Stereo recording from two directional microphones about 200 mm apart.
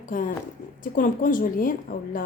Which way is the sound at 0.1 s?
40° left (ahead or behind).